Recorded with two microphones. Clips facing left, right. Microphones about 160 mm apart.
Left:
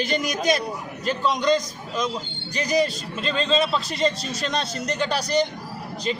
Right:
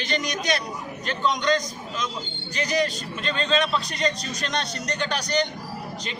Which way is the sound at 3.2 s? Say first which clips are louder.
Left 2 dB; centre (ahead or behind).